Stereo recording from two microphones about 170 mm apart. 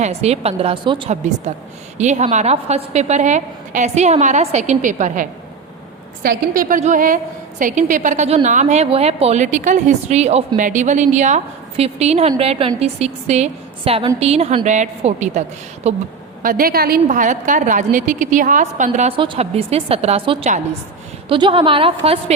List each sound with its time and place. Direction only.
0.0 s a woman's voice: 40° right (ahead or behind)
2.0 s a woman's voice: 40° right (ahead or behind)
16.4 s a woman's voice: 55° right (ahead or behind); by 22.2 s 35° right (ahead or behind)